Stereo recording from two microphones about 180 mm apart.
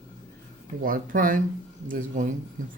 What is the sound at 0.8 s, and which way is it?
Speech, 50° right (ahead or behind).